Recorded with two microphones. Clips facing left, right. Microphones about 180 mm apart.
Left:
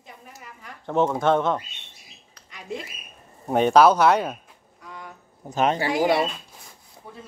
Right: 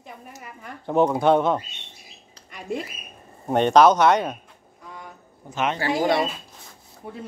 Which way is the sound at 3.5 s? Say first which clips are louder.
Even; 5° left (ahead or behind).